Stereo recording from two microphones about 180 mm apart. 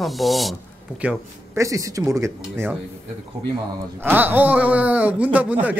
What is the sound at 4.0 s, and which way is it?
Speech, 10° right (ahead or behind).